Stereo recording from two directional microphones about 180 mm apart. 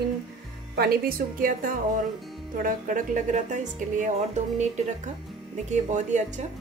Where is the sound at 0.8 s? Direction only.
55° right (ahead or behind).